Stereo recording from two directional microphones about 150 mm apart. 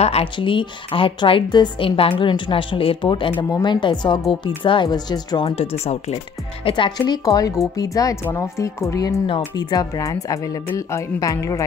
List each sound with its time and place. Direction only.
0.0 s a woman's voice: 40° left (ahead or behind)
5.6 s speech: 45° left (ahead or behind)
6.6 s speech: 30° left (ahead or behind)